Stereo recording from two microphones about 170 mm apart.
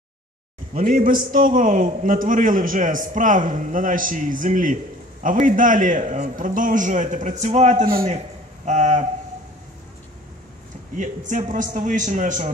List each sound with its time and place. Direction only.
0.7 s a man's voice: 50° right (ahead or behind)
11.0 s a man's voice: 50° right (ahead or behind)